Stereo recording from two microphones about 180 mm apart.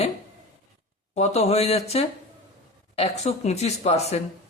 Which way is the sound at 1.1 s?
35° left (ahead or behind).